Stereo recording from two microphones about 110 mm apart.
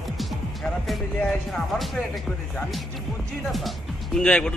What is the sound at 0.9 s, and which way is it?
Speech, 5° left (ahead or behind).